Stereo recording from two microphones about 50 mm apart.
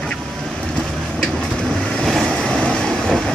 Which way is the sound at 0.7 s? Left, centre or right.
Centre.